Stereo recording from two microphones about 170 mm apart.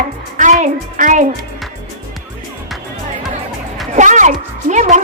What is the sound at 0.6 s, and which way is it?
Music, 45° right (ahead or behind).